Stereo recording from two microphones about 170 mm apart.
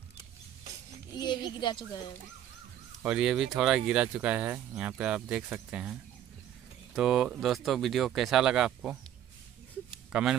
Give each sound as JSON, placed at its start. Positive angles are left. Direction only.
{"t": 1.1, "sound": "speech", "side_deg": 25}
{"t": 3.1, "sound": "speech", "side_deg": -5}
{"t": 9.8, "sound": "a sound", "side_deg": -5}